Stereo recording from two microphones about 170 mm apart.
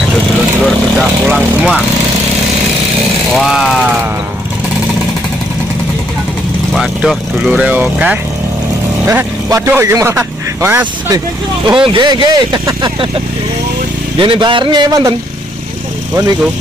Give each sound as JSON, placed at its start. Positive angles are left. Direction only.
{"t": 0.7, "sound": "speech", "side_deg": -5}
{"t": 3.3, "sound": "speech", "side_deg": 0}
{"t": 6.7, "sound": "a man's voice", "side_deg": 0}
{"t": 11.8, "sound": "speech", "side_deg": -30}
{"t": 14.1, "sound": "speech", "side_deg": -30}